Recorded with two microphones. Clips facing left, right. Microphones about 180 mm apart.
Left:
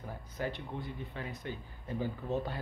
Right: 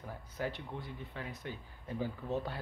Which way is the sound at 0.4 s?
5° right (ahead or behind).